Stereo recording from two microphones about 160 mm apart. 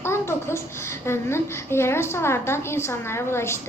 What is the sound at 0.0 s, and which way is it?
A child's voice, 15° left (ahead or behind).